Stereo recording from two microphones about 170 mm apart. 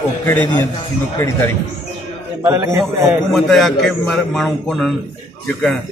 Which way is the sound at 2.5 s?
15° right (ahead or behind).